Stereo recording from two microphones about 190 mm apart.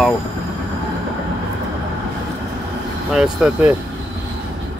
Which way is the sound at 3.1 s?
5° right (ahead or behind).